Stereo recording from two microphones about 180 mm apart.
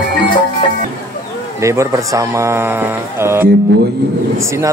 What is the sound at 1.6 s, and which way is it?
Speech, 15° right (ahead or behind).